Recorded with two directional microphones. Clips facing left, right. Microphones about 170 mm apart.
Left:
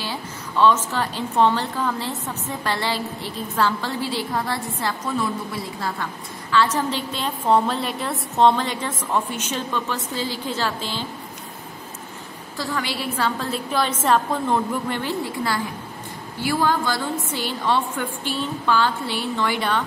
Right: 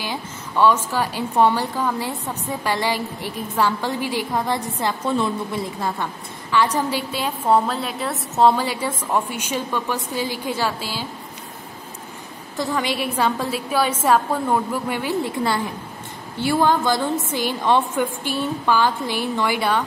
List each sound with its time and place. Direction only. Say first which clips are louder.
0.0 s a woman's voice: right 1 dB; 15° right (ahead or behind)
12.5 s a woman's voice: right 4 dB; 20° right (ahead or behind)
16.3 s a woman's voice: right 3 dB; 25° right (ahead or behind)